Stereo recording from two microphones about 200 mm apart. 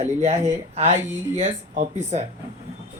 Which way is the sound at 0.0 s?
35° right (ahead or behind).